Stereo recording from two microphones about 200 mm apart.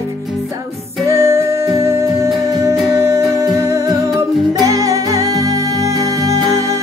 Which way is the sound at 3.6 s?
15° right (ahead or behind).